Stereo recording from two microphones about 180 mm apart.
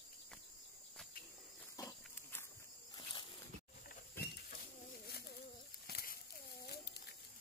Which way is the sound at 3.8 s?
55° left (ahead or behind).